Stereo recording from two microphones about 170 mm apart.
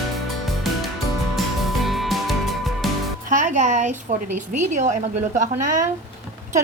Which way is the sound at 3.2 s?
50° right (ahead or behind).